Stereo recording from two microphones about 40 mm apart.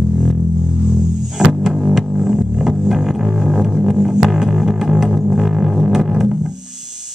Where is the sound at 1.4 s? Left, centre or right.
Centre.